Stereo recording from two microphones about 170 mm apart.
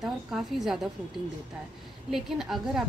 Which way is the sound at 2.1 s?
Centre (ahead or behind).